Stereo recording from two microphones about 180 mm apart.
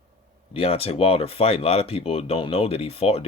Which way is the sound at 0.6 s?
35° left (ahead or behind).